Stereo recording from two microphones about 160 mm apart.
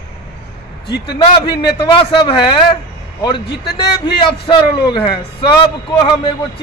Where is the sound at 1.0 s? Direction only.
30° left (ahead or behind).